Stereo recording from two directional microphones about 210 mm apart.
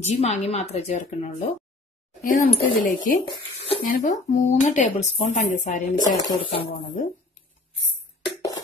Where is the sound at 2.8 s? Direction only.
40° left (ahead or behind).